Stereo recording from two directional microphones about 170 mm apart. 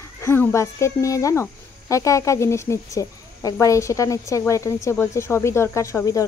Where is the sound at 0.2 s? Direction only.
15° left (ahead or behind).